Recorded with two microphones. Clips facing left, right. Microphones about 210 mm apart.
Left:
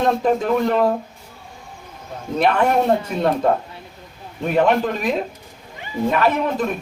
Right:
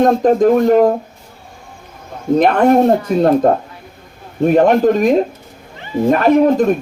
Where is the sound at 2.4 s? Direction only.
40° right (ahead or behind).